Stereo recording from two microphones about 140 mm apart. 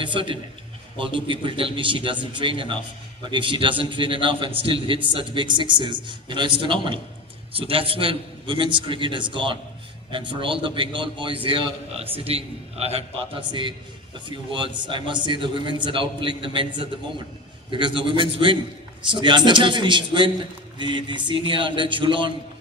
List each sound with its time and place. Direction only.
0.0 s a man's voice: 35° right (ahead or behind)
13.5 s a man's voice: 35° right (ahead or behind)